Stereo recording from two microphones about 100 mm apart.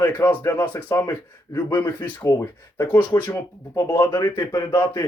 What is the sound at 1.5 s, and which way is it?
Speech, 40° left (ahead or behind).